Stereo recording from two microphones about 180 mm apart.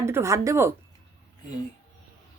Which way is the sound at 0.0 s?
15° right (ahead or behind).